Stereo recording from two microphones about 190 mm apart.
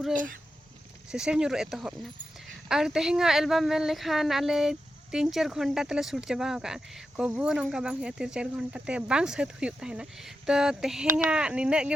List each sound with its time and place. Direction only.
0.1 s speech: 45° right (ahead or behind)
1.1 s speech: 5° right (ahead or behind)